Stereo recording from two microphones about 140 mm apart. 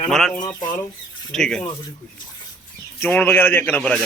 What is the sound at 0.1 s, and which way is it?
Speech, 5° left (ahead or behind).